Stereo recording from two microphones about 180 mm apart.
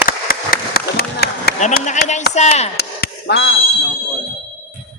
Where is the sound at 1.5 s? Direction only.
40° left (ahead or behind).